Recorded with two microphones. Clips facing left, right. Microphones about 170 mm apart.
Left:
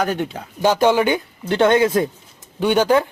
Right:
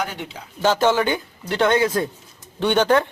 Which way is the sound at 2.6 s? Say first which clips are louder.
Left 2 dB; 10° left (ahead or behind).